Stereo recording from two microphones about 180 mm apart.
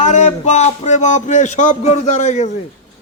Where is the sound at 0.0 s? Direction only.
40° left (ahead or behind).